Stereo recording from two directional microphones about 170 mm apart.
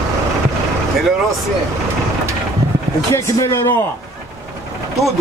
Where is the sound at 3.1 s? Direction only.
15° left (ahead or behind).